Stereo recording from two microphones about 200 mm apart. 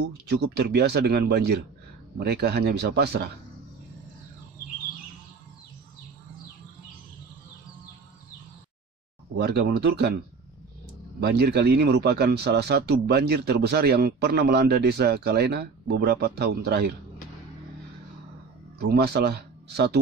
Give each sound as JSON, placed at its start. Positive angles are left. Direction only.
{"t": 0.3, "sound": "speech", "side_deg": -55}
{"t": 9.4, "sound": "speech", "side_deg": -55}
{"t": 11.1, "sound": "speech", "side_deg": -50}
{"t": 18.8, "sound": "speech", "side_deg": -55}